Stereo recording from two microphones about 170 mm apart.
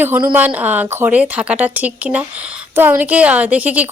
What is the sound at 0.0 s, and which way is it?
A woman's voice, 10° right (ahead or behind).